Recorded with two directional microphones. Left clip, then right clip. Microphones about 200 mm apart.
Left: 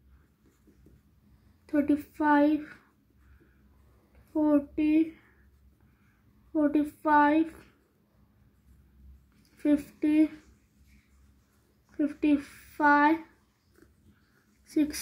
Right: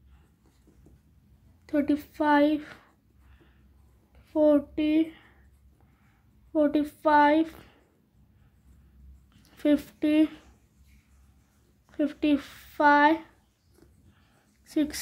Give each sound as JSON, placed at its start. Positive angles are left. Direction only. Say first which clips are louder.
{"t": 1.7, "sound": "speech", "louder": "right 1 dB", "side_deg": -10}
{"t": 4.3, "sound": "speech", "louder": "right 4 dB", "side_deg": -15}
{"t": 6.5, "sound": "speech", "louder": "right 2 dB", "side_deg": -15}
{"t": 9.6, "sound": "speech", "louder": "right 2 dB", "side_deg": -20}
{"t": 12.0, "sound": "speech", "louder": "right 1 dB", "side_deg": -15}